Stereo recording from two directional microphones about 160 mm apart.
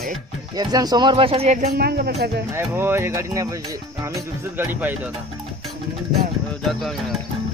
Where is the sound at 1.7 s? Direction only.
75° right (ahead or behind).